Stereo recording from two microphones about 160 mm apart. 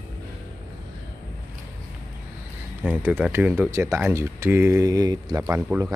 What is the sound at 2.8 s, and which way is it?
Speech, 10° right (ahead or behind).